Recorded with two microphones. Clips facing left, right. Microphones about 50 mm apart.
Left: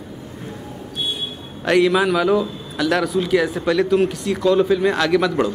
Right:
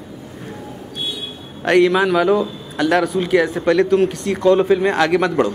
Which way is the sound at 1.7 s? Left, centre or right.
Centre.